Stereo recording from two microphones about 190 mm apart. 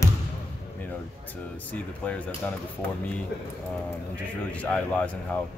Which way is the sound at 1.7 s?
5° left (ahead or behind).